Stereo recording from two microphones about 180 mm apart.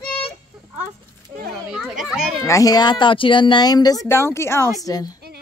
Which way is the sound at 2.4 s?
20° left (ahead or behind).